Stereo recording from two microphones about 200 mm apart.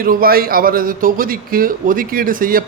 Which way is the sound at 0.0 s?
45° right (ahead or behind).